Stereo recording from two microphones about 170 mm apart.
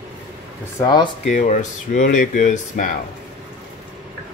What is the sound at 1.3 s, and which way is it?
Speech, 45° left (ahead or behind).